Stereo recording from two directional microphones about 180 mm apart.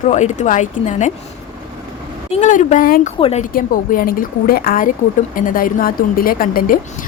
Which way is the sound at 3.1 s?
30° left (ahead or behind).